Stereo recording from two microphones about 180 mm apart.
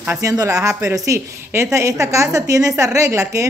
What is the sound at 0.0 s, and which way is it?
A woman's voice, 15° right (ahead or behind).